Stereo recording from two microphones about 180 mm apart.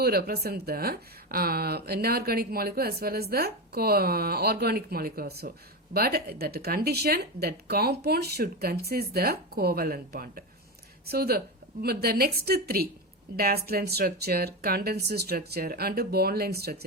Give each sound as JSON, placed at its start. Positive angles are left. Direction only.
{"t": 0.0, "sound": "speech", "side_deg": -55}